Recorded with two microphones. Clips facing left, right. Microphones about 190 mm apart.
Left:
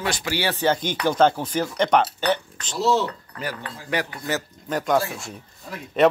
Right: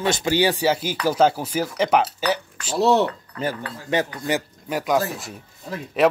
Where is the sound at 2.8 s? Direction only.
60° right (ahead or behind).